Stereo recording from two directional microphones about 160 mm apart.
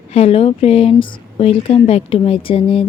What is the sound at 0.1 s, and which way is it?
A woman's voice, 40° left (ahead or behind).